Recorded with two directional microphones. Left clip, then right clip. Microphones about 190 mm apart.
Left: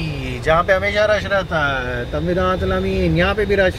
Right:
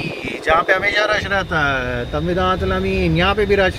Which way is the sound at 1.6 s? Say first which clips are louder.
Right 1 dB; 15° right (ahead or behind).